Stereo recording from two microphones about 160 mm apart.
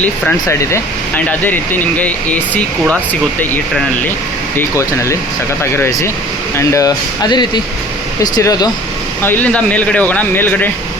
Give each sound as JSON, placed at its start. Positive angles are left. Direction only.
{"t": 0.4, "sound": "speech", "side_deg": 15}
{"t": 5.7, "sound": "speech", "side_deg": 20}
{"t": 9.2, "sound": "speech", "side_deg": 10}